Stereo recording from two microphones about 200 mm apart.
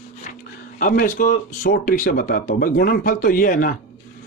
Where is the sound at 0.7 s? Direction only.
40° left (ahead or behind).